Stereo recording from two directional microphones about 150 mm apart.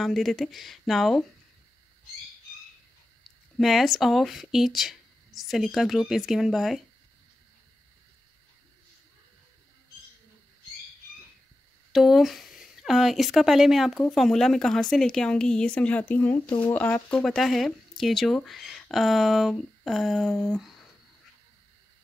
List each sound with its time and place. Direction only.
0.0 s speech: centre (ahead or behind)
3.5 s speech: centre (ahead or behind)
11.9 s speech: centre (ahead or behind)
16.4 s speech: 35° left (ahead or behind)
16.7 s speech: 10° left (ahead or behind)